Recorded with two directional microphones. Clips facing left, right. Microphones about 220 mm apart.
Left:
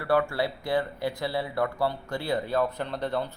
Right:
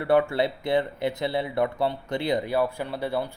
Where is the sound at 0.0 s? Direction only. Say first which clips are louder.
Right 4 dB; 20° right (ahead or behind).